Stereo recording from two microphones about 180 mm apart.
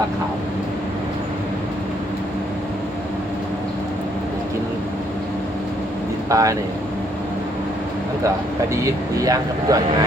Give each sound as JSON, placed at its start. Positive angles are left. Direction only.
{"t": 6.3, "sound": "speech", "side_deg": -20}
{"t": 9.1, "sound": "speech", "side_deg": -20}